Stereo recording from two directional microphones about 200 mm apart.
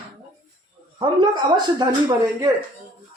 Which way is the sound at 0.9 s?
20° right (ahead or behind).